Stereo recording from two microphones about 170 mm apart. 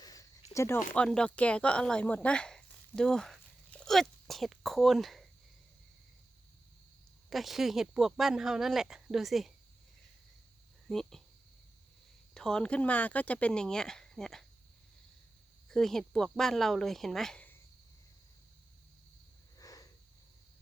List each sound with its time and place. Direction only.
0.0 s a sound: 20° left (ahead or behind)
0.5 s speech: 15° left (ahead or behind)
0.9 s speech: 5° left (ahead or behind)
7.3 s speech: centre (ahead or behind)
10.8 s speech: centre (ahead or behind)
12.3 s speech: 5° left (ahead or behind)
15.7 s speech: centre (ahead or behind)
19.5 s a sound: 20° left (ahead or behind)